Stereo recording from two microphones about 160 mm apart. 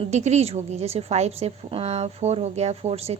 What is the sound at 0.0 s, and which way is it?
A woman's voice, 45° right (ahead or behind).